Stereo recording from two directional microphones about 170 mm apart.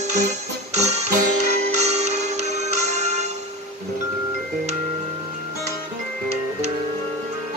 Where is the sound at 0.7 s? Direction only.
40° right (ahead or behind).